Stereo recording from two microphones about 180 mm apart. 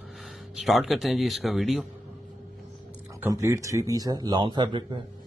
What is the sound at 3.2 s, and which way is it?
A man's voice, 15° right (ahead or behind).